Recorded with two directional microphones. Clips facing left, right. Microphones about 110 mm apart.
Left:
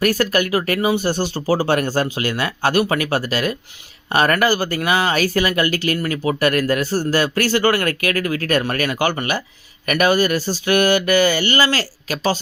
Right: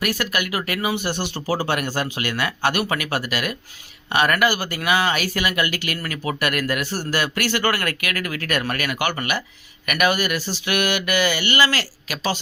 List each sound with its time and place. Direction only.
0.0 s speech: 40° left (ahead or behind)